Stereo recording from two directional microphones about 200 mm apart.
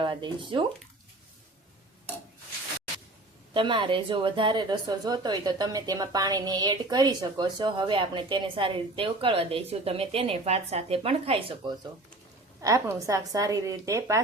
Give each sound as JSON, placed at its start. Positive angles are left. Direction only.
{"t": 0.0, "sound": "speech", "side_deg": -25}
{"t": 3.5, "sound": "a woman's voice", "side_deg": -25}